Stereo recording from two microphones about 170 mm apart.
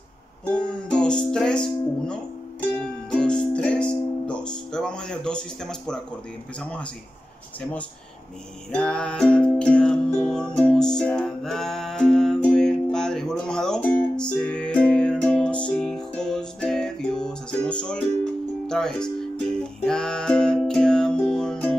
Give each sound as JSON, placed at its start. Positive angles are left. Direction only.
{"t": 0.5, "sound": "speech", "side_deg": 5}
{"t": 2.8, "sound": "music", "side_deg": 5}
{"t": 6.6, "sound": "speech", "side_deg": 5}
{"t": 8.7, "sound": "music", "side_deg": 5}
{"t": 18.7, "sound": "speech", "side_deg": 5}
{"t": 19.8, "sound": "music", "side_deg": 5}